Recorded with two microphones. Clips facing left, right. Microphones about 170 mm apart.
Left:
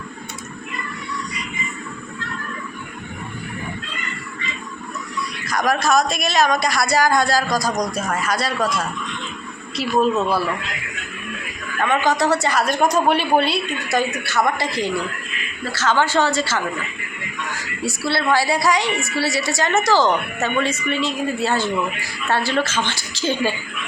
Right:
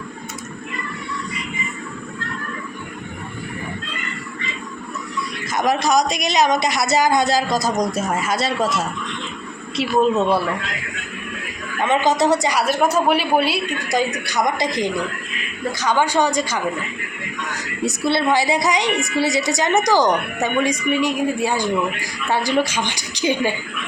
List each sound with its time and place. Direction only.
5.5 s speech: 20° right (ahead or behind)
11.8 s a woman's voice: 20° right (ahead or behind)
17.8 s a woman's voice: 20° right (ahead or behind)